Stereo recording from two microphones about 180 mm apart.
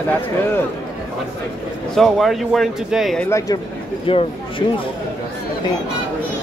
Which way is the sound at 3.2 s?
15° left (ahead or behind).